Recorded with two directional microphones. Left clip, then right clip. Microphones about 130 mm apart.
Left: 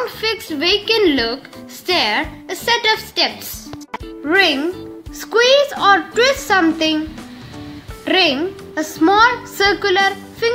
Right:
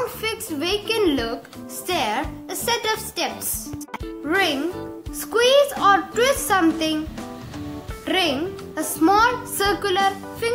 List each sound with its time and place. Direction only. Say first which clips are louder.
0.2 s a woman's voice: left 7 dB; 15° left (ahead or behind)
4.2 s a child's voice: left 7 dB; 30° left (ahead or behind)
8.0 s a woman's voice: left 7 dB; 25° left (ahead or behind)